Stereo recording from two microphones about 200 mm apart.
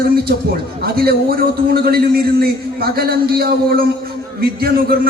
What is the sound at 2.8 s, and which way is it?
A man's voice, 50° right (ahead or behind).